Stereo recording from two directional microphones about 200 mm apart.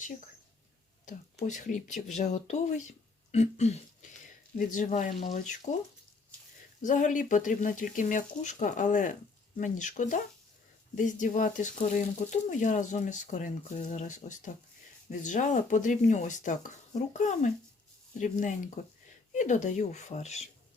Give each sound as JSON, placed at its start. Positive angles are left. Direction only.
{"t": 1.0, "sound": "speech", "side_deg": 35}
{"t": 6.8, "sound": "speech", "side_deg": 40}